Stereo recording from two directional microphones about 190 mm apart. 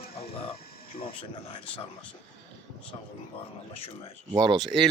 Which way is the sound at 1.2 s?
25° left (ahead or behind).